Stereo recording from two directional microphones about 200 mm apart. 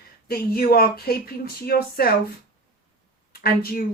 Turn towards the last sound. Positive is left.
turn(degrees=50)  # may be behind; listen again after turning